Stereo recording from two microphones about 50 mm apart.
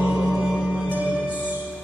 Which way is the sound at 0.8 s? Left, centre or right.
Right.